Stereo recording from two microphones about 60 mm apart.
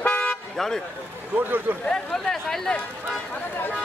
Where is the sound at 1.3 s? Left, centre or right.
Right.